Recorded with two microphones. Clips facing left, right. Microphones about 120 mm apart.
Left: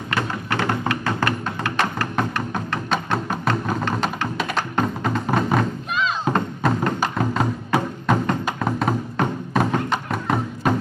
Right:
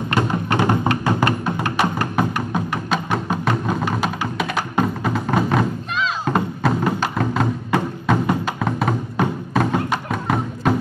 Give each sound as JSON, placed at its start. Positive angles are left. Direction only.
{"t": 0.1, "sound": "music", "side_deg": -20}
{"t": 7.0, "sound": "music", "side_deg": 5}